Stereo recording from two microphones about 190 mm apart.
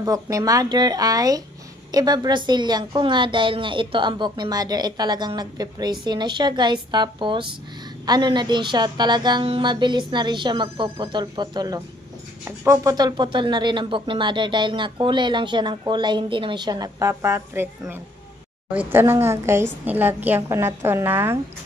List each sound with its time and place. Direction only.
0.0 s a woman's voice: 20° right (ahead or behind)